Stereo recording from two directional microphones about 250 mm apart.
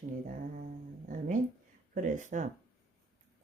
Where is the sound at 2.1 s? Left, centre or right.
Right.